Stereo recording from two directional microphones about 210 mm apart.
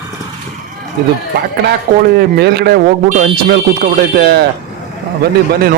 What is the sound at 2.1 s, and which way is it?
Speech, 50° right (ahead or behind).